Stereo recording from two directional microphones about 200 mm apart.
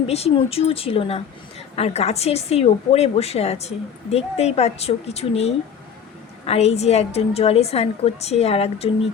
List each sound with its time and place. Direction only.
0.1 s a woman's voice: 30° left (ahead or behind)